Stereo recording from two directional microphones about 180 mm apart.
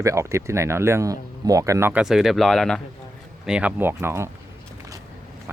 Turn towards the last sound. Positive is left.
turn(degrees=-15)  # may be behind; listen again after turning